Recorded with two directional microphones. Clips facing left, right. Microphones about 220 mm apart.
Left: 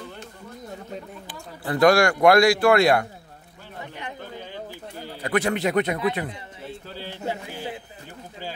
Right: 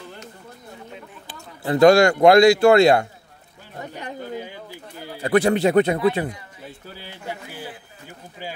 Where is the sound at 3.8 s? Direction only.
40° right (ahead or behind).